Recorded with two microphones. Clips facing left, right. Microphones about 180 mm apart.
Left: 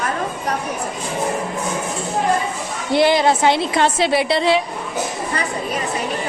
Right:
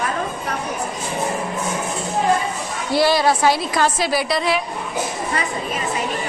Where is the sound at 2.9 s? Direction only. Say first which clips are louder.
Left 2 dB; 20° left (ahead or behind).